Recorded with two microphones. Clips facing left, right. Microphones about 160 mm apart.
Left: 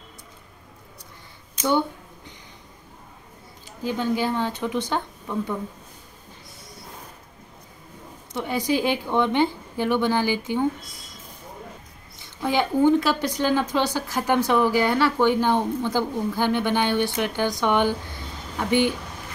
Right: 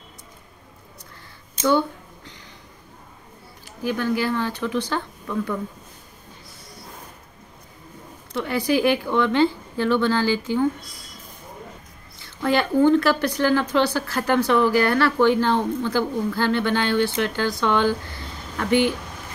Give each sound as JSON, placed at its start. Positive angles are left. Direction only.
{"t": 1.7, "sound": "a sound", "side_deg": 20}
{"t": 3.8, "sound": "speech", "side_deg": 20}
{"t": 8.4, "sound": "a woman's voice", "side_deg": 15}
{"t": 12.2, "sound": "a woman's voice", "side_deg": 15}